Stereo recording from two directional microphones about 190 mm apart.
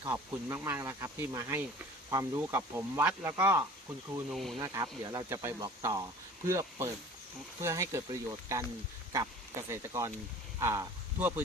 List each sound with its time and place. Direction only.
0.0 s speech: 15° right (ahead or behind); by 4.5 s centre (ahead or behind)
4.6 s speech: 20° right (ahead or behind)